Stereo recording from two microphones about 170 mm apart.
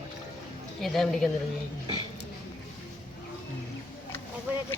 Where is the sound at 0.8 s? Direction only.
Centre (ahead or behind).